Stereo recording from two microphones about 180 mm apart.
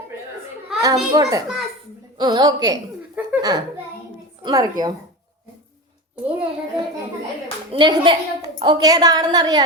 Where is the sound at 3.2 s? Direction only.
10° right (ahead or behind).